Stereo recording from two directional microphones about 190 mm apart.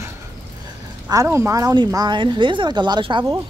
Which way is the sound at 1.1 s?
15° right (ahead or behind).